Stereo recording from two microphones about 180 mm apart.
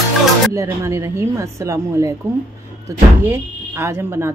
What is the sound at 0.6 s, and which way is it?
A woman's voice, 15° right (ahead or behind).